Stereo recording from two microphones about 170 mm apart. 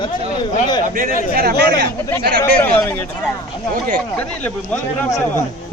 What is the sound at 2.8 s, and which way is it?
Speech, 15° left (ahead or behind).